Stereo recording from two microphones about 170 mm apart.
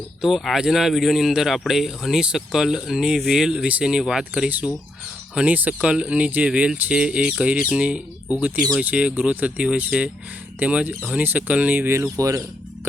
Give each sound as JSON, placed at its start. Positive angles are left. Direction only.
{"t": 0.2, "sound": "speech", "side_deg": 0}